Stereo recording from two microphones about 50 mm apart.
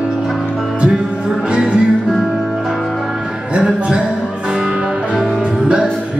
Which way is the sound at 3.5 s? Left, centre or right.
Centre.